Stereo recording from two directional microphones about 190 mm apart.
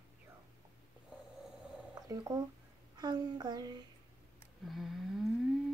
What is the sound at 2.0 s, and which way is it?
Speech, 20° right (ahead or behind).